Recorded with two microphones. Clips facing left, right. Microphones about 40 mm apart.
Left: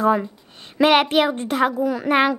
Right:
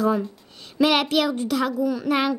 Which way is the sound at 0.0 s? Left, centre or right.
Left.